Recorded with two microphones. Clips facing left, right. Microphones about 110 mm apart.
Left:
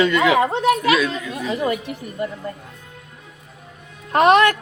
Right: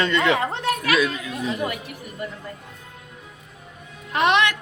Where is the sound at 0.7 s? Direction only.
20° left (ahead or behind).